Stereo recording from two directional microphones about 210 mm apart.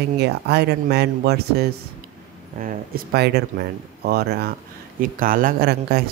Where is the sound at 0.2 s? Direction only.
50° right (ahead or behind).